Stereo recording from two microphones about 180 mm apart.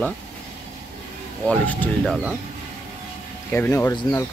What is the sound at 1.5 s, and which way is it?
Speech, 10° left (ahead or behind).